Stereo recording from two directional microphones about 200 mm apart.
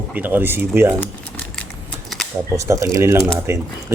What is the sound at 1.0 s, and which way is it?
Typing, 5° left (ahead or behind).